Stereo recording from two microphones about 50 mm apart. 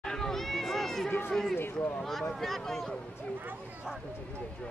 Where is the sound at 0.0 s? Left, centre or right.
Centre.